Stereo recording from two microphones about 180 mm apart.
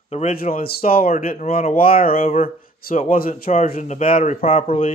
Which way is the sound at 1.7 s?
55° left (ahead or behind).